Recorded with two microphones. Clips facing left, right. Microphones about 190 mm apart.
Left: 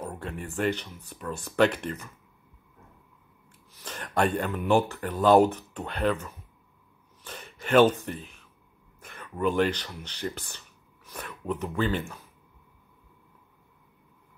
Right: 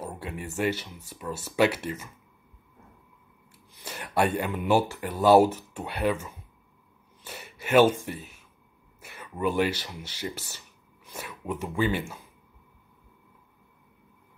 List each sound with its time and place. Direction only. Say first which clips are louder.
0.0 s a sound: even; 10° right (ahead or behind)
0.6 s speech: even; 5° right (ahead or behind)
3.7 s speech: right 1 dB; 10° right (ahead or behind)
7.2 s speech: left 1 dB; 10° right (ahead or behind)